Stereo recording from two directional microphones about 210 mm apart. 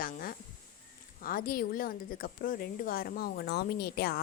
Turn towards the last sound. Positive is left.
turn(degrees=50)  # may be behind; listen again after turning